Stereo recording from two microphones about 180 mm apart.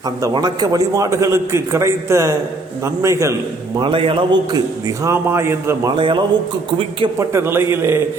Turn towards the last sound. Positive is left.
turn(degrees=-15)  # may be behind; listen again after turning